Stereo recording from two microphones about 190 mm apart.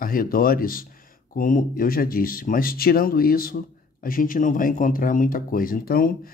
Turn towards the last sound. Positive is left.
turn(degrees=50)  # may be behind; listen again after turning